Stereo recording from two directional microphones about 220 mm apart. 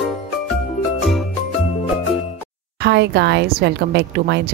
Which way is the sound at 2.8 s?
50° right (ahead or behind).